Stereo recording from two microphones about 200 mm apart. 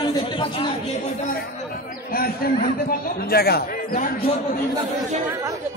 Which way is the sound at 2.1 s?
45° left (ahead or behind).